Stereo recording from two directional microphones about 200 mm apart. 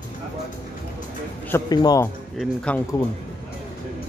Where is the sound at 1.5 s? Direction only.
20° left (ahead or behind).